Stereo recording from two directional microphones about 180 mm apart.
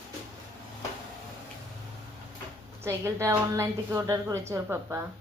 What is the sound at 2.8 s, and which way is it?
A woman's voice, 15° right (ahead or behind).